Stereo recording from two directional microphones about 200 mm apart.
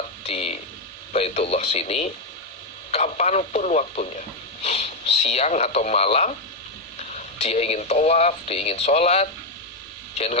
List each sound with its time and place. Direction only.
0.3 s a sound: 30° left (ahead or behind)
1.1 s speech: 30° left (ahead or behind)
7.3 s speech: 30° left (ahead or behind)